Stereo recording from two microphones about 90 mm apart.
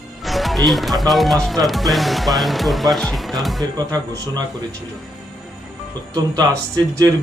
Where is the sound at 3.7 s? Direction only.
45° right (ahead or behind).